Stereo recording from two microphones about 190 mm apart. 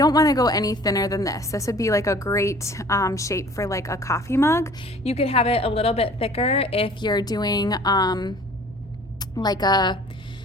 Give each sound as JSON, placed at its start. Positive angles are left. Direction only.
{"t": 0.0, "sound": "a woman's voice", "side_deg": 20}
{"t": 5.0, "sound": "a woman's voice", "side_deg": 30}
{"t": 9.3, "sound": "a woman's voice", "side_deg": 20}